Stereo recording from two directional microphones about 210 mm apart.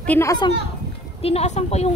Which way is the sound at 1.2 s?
30° left (ahead or behind).